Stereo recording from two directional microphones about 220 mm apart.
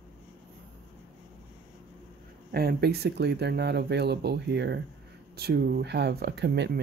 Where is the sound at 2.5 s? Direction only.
45° right (ahead or behind).